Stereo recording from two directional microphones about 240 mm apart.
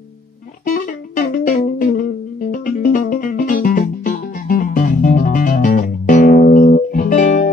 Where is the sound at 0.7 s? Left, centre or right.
Left.